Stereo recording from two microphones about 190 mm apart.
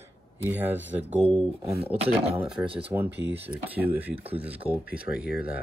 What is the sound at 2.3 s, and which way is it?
Speech, 5° right (ahead or behind).